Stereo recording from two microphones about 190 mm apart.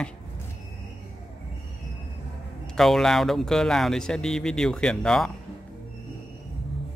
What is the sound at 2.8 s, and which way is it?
Speech, centre (ahead or behind).